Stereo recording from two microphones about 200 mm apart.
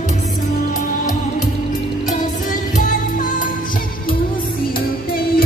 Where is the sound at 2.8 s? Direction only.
40° left (ahead or behind).